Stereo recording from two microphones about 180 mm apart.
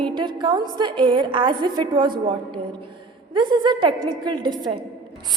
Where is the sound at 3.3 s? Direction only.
25° right (ahead or behind).